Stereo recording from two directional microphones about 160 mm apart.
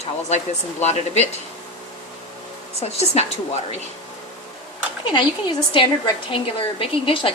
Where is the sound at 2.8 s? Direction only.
40° left (ahead or behind).